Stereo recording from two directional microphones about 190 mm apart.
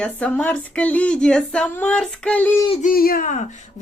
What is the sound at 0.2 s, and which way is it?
Speech, 5° left (ahead or behind).